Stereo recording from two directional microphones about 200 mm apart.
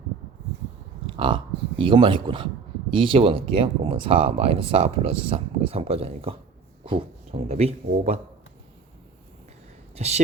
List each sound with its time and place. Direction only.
1.1 s a sound: 25° right (ahead or behind)
1.8 s speech: 25° right (ahead or behind)
9.9 s speech: 35° right (ahead or behind)